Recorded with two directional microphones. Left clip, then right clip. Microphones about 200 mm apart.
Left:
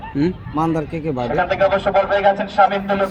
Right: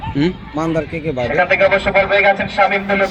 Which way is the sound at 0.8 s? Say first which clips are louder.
Right 3 dB; 55° left (ahead or behind).